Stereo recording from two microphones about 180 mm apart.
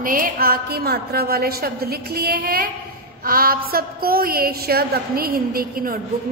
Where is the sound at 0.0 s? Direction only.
50° right (ahead or behind).